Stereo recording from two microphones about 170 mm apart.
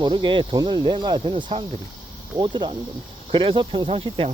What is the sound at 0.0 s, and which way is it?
Speech, 25° right (ahead or behind).